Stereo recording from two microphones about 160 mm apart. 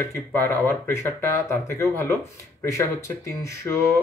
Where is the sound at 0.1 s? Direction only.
15° left (ahead or behind).